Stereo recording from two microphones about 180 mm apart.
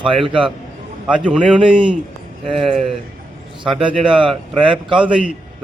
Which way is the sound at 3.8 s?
30° right (ahead or behind).